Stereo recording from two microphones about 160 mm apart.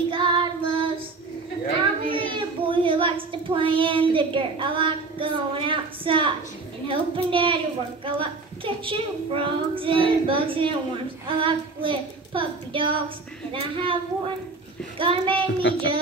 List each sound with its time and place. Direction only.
0.1 s child singing: 30° right (ahead or behind)
2.0 s a woman's voice: 35° right (ahead or behind)
15.7 s child singing: 90° left